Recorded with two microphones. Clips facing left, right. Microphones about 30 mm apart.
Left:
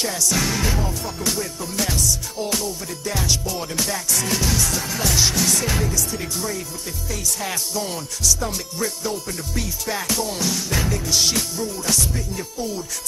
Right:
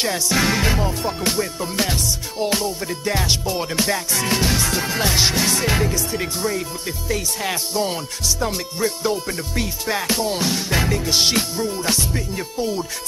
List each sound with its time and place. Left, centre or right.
0.0 s music: right